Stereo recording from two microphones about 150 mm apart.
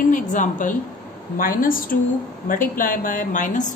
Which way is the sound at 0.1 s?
55° left (ahead or behind).